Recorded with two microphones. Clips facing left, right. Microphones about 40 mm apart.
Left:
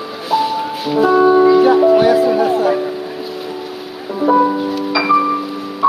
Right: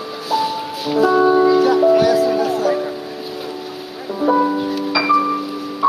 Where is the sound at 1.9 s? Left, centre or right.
Left.